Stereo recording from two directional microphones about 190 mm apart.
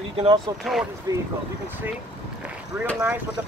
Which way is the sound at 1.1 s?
20° right (ahead or behind).